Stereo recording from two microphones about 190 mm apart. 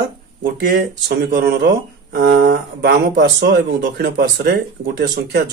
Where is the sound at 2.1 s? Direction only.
45° right (ahead or behind).